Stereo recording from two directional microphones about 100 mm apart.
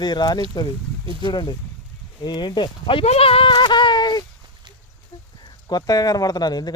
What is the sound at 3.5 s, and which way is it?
Speech, 50° left (ahead or behind).